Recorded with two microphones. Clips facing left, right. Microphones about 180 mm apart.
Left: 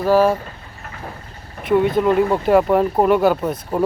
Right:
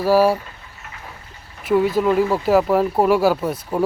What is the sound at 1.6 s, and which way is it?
Speech, 5° right (ahead or behind).